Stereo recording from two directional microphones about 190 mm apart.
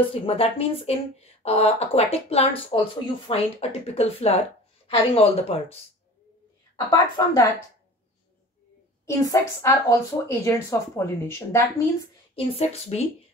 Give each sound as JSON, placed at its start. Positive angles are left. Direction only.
{"t": 0.0, "sound": "speech", "side_deg": 30}
{"t": 6.9, "sound": "speech", "side_deg": 15}
{"t": 9.0, "sound": "speech", "side_deg": 15}
{"t": 12.4, "sound": "speech", "side_deg": 35}